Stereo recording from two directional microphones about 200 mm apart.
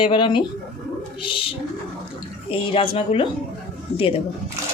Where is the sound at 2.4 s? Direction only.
25° left (ahead or behind).